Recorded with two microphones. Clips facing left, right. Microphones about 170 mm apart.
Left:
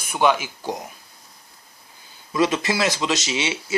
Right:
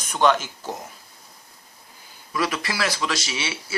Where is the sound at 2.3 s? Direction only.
25° left (ahead or behind).